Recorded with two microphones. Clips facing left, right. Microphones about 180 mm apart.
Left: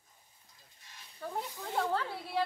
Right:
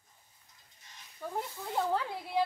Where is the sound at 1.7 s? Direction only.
10° right (ahead or behind).